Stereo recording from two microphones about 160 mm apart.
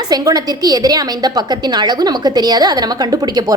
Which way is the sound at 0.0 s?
25° right (ahead or behind).